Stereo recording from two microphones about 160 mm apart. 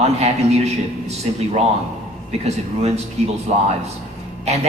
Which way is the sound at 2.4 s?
40° right (ahead or behind).